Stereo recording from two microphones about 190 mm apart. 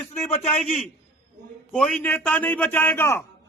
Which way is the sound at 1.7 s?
5° left (ahead or behind).